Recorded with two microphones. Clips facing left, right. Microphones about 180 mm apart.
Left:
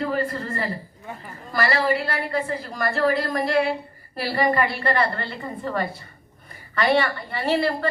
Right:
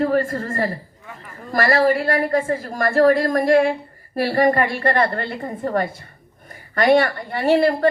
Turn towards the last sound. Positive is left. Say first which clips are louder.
# right 6 dB
turn(degrees=-50)  # may be behind; listen again after turning